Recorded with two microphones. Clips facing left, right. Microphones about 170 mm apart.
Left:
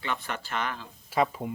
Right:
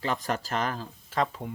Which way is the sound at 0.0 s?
40° right (ahead or behind).